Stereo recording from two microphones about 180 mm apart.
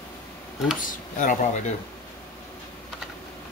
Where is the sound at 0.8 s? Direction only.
45° left (ahead or behind).